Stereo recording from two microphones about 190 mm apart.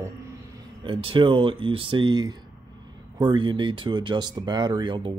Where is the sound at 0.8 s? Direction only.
30° right (ahead or behind).